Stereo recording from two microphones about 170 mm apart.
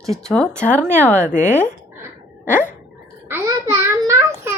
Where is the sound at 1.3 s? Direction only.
45° left (ahead or behind).